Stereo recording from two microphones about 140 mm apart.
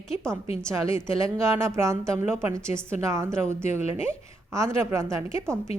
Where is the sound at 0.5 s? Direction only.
20° right (ahead or behind).